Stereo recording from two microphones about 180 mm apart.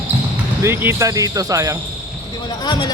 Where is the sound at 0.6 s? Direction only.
15° right (ahead or behind).